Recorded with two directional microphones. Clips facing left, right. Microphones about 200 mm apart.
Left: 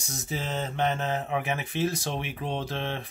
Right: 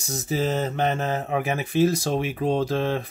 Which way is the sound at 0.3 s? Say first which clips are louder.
Right 8 dB; 40° right (ahead or behind).